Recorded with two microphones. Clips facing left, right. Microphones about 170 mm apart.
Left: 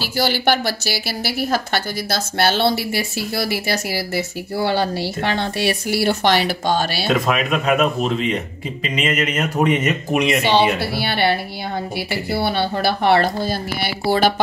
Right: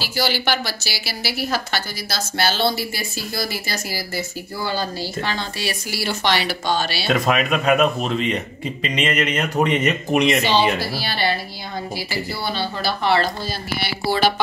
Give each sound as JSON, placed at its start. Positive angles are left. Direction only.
{"t": 0.0, "sound": "a woman's voice", "side_deg": 50}
{"t": 7.1, "sound": "speech", "side_deg": 0}
{"t": 10.4, "sound": "a woman's voice", "side_deg": 65}